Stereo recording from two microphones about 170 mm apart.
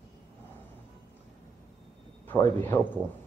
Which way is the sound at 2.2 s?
10° left (ahead or behind).